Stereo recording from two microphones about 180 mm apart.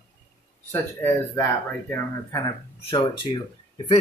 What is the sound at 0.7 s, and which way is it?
Speech, 10° left (ahead or behind).